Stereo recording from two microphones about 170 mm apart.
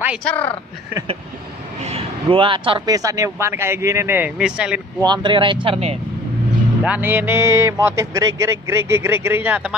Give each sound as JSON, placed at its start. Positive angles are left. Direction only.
{"t": 0.2, "sound": "speech", "side_deg": 5}
{"t": 1.9, "sound": "speech", "side_deg": -35}
{"t": 5.0, "sound": "speech", "side_deg": -25}
{"t": 6.8, "sound": "speech", "side_deg": -10}